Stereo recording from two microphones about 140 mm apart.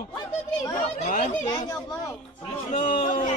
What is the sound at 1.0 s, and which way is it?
Chatter, 65° left (ahead or behind).